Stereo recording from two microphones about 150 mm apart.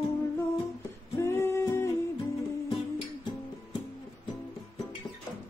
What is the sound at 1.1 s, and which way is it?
Music, 15° left (ahead or behind).